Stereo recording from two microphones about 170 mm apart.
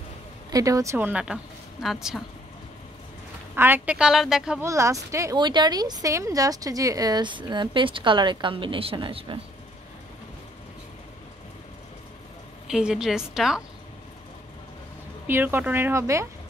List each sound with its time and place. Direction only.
0.5 s a woman's voice: 20° right (ahead or behind); by 2.2 s centre (ahead or behind)
3.5 s a woman's voice: 10° right (ahead or behind)
4.6 s a woman's voice: 15° right (ahead or behind)
12.6 s a woman's voice: 5° right (ahead or behind)
15.2 s a woman's voice: 10° right (ahead or behind)